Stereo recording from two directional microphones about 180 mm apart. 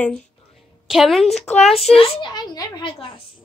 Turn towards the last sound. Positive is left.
turn(degrees=25)  # may be behind; listen again after turning